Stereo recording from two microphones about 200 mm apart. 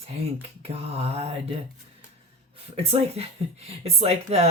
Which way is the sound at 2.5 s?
30° right (ahead or behind).